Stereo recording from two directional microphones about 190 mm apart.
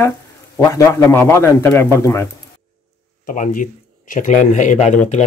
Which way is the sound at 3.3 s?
45° left (ahead or behind).